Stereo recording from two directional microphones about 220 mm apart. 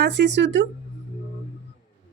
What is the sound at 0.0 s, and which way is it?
Speech, 50° right (ahead or behind).